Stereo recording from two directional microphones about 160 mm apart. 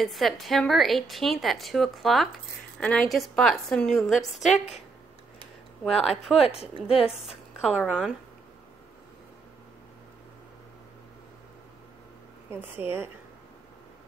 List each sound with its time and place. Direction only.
0.0 s speech: centre (ahead or behind)
5.9 s speech: centre (ahead or behind)
6.4 s speech: 40° left (ahead or behind)
7.2 s a woman's voice: 5° right (ahead or behind)
12.8 s a woman's voice: 10° right (ahead or behind)